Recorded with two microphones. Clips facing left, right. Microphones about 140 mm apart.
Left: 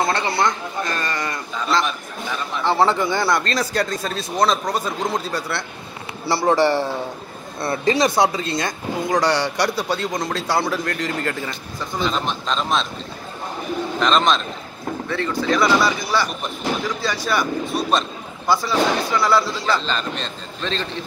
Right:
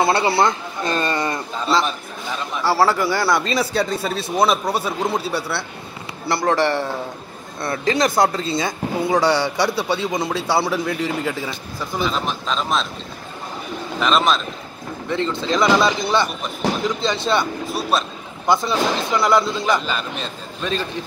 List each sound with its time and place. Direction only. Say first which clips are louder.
0.0 s a man's voice: right 4 dB; 10° right (ahead or behind)
0.8 s speech: right 8 dB; 30° right (ahead or behind)
3.2 s speech: right 1 dB; 5° right (ahead or behind)
13.9 s speech: even; 5° right (ahead or behind)
15.0 s speech: even; 20° right (ahead or behind)
17.6 s speech: left 1 dB; 5° right (ahead or behind)
18.5 s speech: even; 20° right (ahead or behind)